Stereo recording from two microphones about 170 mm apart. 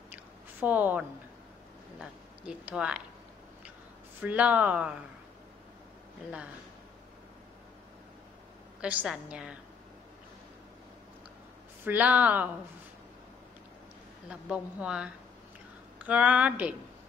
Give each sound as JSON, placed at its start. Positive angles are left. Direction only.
{"t": 0.1, "sound": "a sound", "side_deg": -10}
{"t": 2.0, "sound": "speech", "side_deg": -5}
{"t": 4.2, "sound": "speech", "side_deg": -10}
{"t": 8.8, "sound": "a woman's voice", "side_deg": -5}
{"t": 11.8, "sound": "speech", "side_deg": -10}
{"t": 14.3, "sound": "a woman's voice", "side_deg": -5}